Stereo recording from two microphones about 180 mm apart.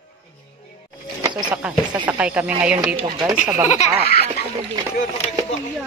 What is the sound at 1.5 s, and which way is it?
Speech, 5° right (ahead or behind).